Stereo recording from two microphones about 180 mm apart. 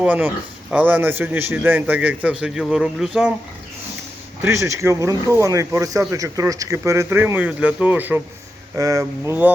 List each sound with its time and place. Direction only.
0.0 s speech: 10° right (ahead or behind)
4.4 s speech: 15° right (ahead or behind)